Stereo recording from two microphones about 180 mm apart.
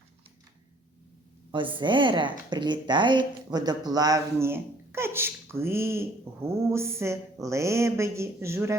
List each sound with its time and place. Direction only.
1.5 s a woman's voice: 25° right (ahead or behind)